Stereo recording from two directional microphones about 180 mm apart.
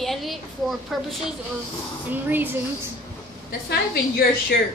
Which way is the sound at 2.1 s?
10° right (ahead or behind).